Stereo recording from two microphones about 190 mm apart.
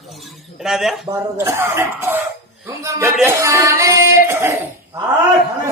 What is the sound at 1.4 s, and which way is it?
Speech, 15° right (ahead or behind).